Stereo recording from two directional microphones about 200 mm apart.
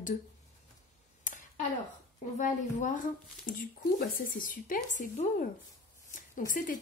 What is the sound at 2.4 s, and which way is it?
A woman's voice, 40° left (ahead or behind).